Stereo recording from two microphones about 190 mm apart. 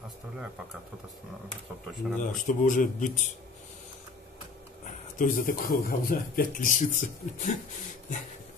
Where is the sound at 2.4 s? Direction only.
40° left (ahead or behind).